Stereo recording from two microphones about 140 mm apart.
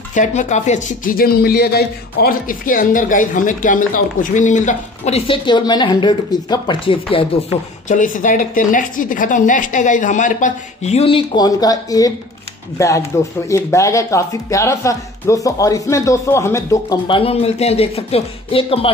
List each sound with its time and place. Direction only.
0.1 s speech: 60° left (ahead or behind); by 1.8 s 90° left
2.2 s speech: 75° left (ahead or behind); by 7.2 s 40° left (ahead or behind)
7.9 s speech: 65° left (ahead or behind); by 17.0 s 20° left (ahead or behind)
17.1 s speech: 45° left (ahead or behind)